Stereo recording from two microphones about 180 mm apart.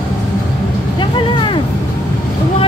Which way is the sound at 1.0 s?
25° left (ahead or behind).